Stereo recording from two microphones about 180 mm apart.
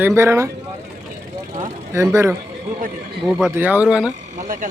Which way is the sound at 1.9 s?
15° right (ahead or behind).